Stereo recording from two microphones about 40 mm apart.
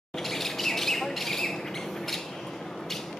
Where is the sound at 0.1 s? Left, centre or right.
Centre.